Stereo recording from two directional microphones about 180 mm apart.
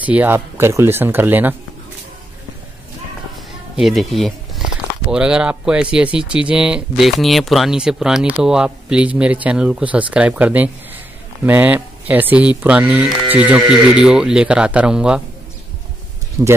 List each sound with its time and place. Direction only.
0.0 s speech: 10° right (ahead or behind)
3.7 s speech: centre (ahead or behind)
16.4 s speech: 20° right (ahead or behind)